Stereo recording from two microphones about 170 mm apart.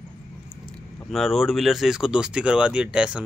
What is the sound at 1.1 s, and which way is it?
Speech, centre (ahead or behind).